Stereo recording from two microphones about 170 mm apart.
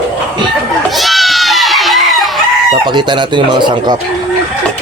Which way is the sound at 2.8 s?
25° right (ahead or behind).